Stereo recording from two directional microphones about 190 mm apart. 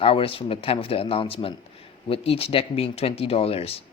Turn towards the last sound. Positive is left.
turn(degrees=30)  # may be behind; listen again after turning